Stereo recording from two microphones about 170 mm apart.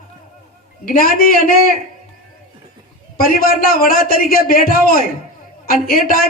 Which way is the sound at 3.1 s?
60° left (ahead or behind).